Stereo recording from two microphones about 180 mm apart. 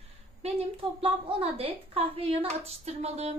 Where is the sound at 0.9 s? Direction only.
30° right (ahead or behind).